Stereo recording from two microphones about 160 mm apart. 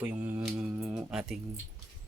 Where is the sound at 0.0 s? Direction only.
10° right (ahead or behind).